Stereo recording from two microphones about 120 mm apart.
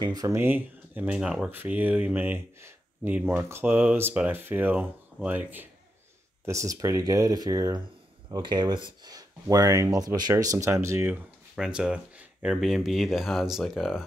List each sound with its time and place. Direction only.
0.0 s speech: 30° right (ahead or behind)
0.4 s speech: 15° right (ahead or behind)
6.4 s speech: 25° right (ahead or behind)
11.5 s speech: 5° right (ahead or behind)